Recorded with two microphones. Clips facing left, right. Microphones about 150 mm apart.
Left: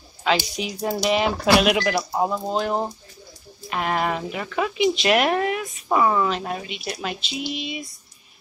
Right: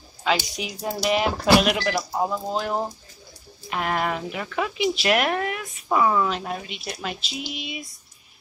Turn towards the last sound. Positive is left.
turn(degrees=0)  # may be behind; listen again after turning